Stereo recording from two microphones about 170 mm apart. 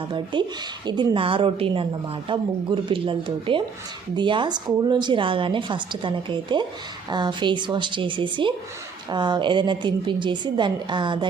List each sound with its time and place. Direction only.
0.3 s a woman's voice: 30° right (ahead or behind)